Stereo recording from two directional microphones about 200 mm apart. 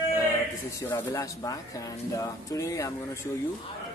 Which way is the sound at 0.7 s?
15° left (ahead or behind).